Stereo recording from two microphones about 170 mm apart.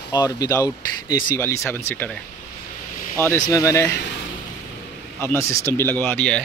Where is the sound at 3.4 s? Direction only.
20° left (ahead or behind).